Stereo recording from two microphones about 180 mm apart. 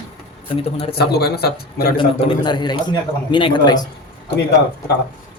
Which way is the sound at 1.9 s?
25° left (ahead or behind).